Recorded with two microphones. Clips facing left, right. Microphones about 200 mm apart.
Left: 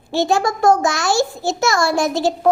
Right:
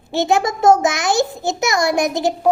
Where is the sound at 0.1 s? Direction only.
20° right (ahead or behind).